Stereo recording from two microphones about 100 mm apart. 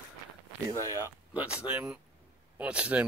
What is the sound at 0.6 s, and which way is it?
Speech, 30° right (ahead or behind).